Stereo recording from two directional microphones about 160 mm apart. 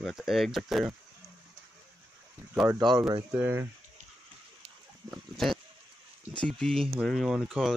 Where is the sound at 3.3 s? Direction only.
10° right (ahead or behind).